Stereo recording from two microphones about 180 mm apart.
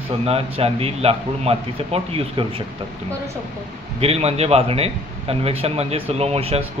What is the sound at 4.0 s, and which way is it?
Speech, 35° right (ahead or behind).